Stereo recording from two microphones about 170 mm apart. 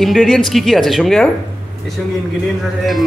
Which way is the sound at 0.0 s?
Centre (ahead or behind).